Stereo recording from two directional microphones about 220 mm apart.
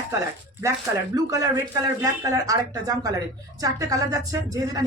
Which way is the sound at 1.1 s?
15° right (ahead or behind).